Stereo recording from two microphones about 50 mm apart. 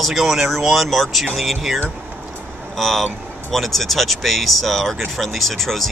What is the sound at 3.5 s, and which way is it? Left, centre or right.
Speech, centre.